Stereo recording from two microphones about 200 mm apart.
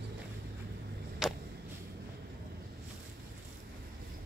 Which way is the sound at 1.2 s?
Centre (ahead or behind).